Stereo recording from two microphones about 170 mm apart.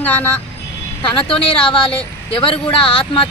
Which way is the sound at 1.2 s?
30° left (ahead or behind).